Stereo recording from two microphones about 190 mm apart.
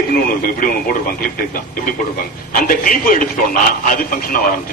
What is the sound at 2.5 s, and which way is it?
A man's voice, 45° left (ahead or behind).